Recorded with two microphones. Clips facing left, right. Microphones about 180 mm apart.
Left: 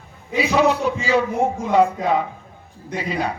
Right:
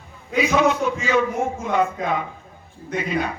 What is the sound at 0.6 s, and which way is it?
Speech, 35° left (ahead or behind).